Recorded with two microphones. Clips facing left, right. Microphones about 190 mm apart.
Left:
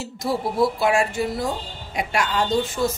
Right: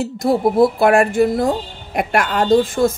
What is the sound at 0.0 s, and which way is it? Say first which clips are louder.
Speech: right 9 dB; 55° right (ahead or behind).